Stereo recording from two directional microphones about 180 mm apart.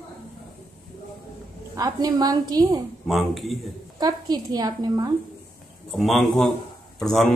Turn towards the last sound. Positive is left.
turn(degrees=0)  # may be behind; listen again after turning